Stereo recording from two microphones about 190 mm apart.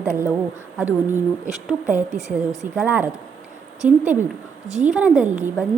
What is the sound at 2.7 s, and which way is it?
Speech, 10° right (ahead or behind).